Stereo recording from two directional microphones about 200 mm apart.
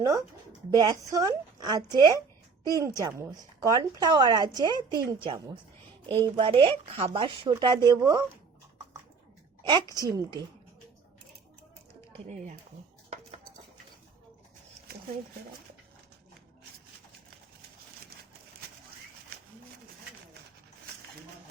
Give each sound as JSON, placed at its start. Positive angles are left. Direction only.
{"t": 0.0, "sound": "a woman's voice", "side_deg": -15}
{"t": 9.6, "sound": "a woman's voice", "side_deg": -20}